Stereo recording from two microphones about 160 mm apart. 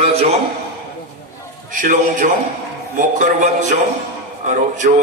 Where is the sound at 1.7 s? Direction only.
55° right (ahead or behind).